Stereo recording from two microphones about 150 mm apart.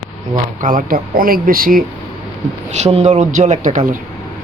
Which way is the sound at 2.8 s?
50° right (ahead or behind).